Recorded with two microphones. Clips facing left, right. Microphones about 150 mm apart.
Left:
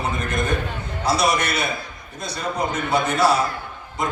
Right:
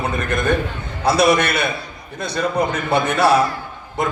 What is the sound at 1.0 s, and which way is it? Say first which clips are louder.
Speech: right 5 dB; 60° right (ahead or behind).